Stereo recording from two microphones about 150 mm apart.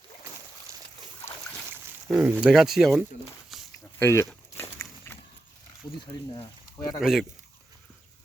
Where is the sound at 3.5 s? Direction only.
Centre (ahead or behind).